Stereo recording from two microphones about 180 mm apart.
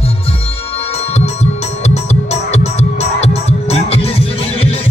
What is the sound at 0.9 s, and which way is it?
Music, 35° left (ahead or behind).